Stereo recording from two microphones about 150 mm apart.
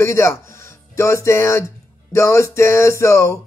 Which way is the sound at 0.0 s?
20° left (ahead or behind).